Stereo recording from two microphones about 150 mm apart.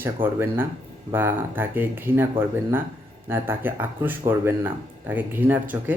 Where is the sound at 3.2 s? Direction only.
15° right (ahead or behind).